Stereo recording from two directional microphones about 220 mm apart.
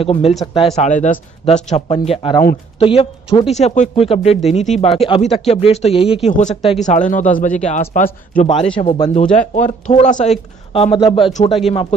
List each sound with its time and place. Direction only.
0.0 s speech: 25° left (ahead or behind)
8.7 s speech: 20° left (ahead or behind)
9.3 s speech: 30° left (ahead or behind)